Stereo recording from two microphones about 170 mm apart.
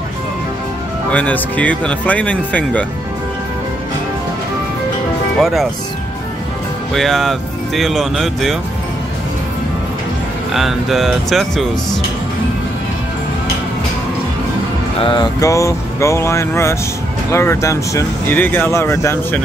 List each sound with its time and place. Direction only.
1.1 s speech: 10° left (ahead or behind)
5.4 s speech: centre (ahead or behind)
6.9 s speech: centre (ahead or behind)
10.5 s speech: centre (ahead or behind)
15.0 s speech: 30° left (ahead or behind)
15.4 s speech: 20° left (ahead or behind)